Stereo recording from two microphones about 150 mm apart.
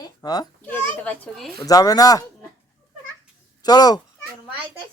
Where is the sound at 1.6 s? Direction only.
25° left (ahead or behind).